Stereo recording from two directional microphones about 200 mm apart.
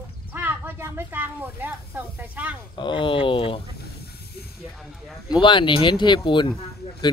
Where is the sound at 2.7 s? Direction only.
25° left (ahead or behind).